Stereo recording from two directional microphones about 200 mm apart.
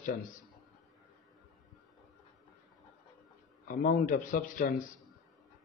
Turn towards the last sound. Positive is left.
turn(degrees=45)  # may be behind; listen again after turning